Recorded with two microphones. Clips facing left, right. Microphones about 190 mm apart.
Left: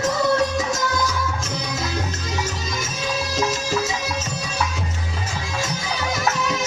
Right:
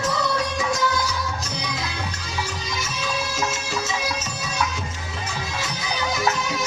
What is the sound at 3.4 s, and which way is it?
Music, 35° left (ahead or behind).